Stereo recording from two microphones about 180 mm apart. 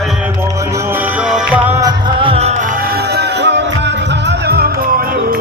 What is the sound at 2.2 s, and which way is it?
Music, 35° right (ahead or behind).